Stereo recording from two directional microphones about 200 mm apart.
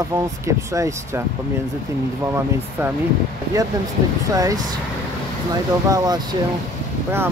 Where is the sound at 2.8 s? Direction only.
10° right (ahead or behind).